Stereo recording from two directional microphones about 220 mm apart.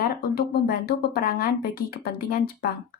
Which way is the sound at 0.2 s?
45° left (ahead or behind).